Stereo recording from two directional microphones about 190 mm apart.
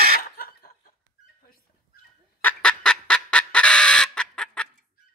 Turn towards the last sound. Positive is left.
turn(degrees=5)  # may be behind; listen again after turning